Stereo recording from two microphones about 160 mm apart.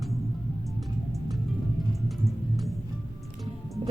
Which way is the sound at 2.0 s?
Centre (ahead or behind).